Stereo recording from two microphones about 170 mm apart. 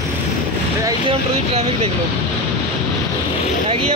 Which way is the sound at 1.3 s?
35° right (ahead or behind).